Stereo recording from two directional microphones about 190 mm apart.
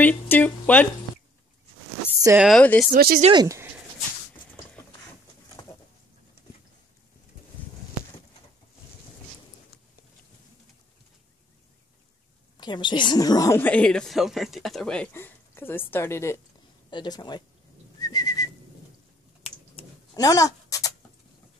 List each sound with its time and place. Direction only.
0.0 s speech: 10° left (ahead or behind)
2.3 s speech: 5° right (ahead or behind)
2.6 s a woman's voice: 10° left (ahead or behind)
2.9 s speech: 55° right (ahead or behind)
3.2 s speech: 30° right (ahead or behind)
12.5 s a woman's voice: 25° left (ahead or behind)
18.0 s whistling: 20° left (ahead or behind)
20.2 s dog: 15° left (ahead or behind)